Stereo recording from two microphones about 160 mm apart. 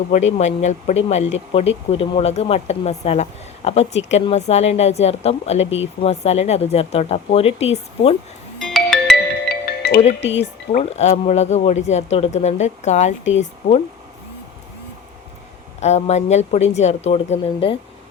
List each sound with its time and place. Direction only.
0.1 s speech: 45° left (ahead or behind)
8.5 s music: 5° left (ahead or behind)
9.5 s music: 75° left (ahead or behind)
10.8 s speech: 40° left (ahead or behind)
15.8 s speech: 45° left (ahead or behind)